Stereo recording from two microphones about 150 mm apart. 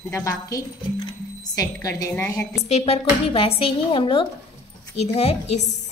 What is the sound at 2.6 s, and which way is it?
A woman's voice, 40° left (ahead or behind).